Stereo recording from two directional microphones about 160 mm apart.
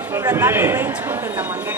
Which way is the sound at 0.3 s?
15° right (ahead or behind).